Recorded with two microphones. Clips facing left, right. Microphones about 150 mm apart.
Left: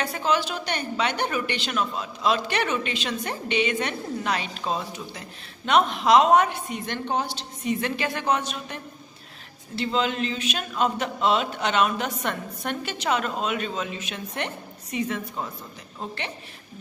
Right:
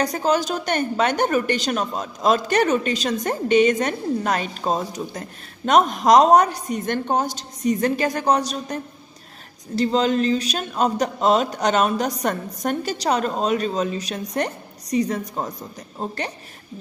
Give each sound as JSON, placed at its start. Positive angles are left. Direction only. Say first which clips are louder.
{"t": 0.0, "sound": "a woman's voice", "louder": "right 5 dB", "side_deg": -40}